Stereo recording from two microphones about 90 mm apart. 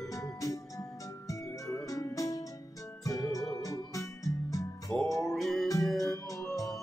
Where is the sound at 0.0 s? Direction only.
40° left (ahead or behind).